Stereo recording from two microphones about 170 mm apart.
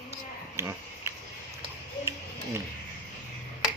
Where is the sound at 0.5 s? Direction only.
15° right (ahead or behind).